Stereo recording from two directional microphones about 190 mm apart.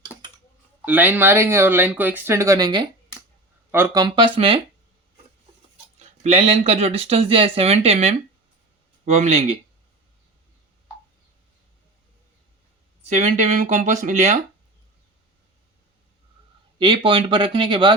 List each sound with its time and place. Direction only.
0.9 s speech: 10° right (ahead or behind)
3.7 s speech: 10° right (ahead or behind); by 4.6 s 30° right (ahead or behind)
6.0 s speech: 35° right (ahead or behind)
13.1 s speech: 40° right (ahead or behind)
16.7 s speech: 25° right (ahead or behind)